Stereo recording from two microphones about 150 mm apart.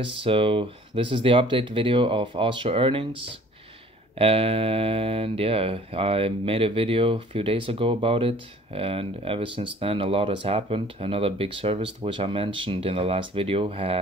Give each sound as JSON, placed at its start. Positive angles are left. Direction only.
{"t": 0.0, "sound": "speech", "side_deg": -35}